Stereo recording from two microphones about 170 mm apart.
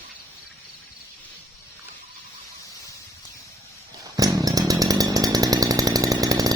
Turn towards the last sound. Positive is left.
turn(degrees=-20)  # may be behind; listen again after turning